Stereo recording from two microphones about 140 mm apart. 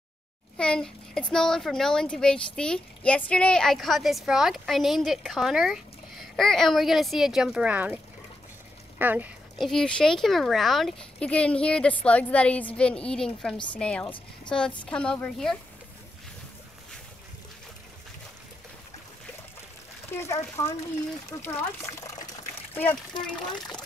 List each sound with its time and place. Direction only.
0.6 s a child's voice: 5° left (ahead or behind); by 9.3 s 15° right (ahead or behind)
9.6 s a child's voice: 5° left (ahead or behind)
20.1 s speech: 20° left (ahead or behind)
23.2 s speech: 5° left (ahead or behind)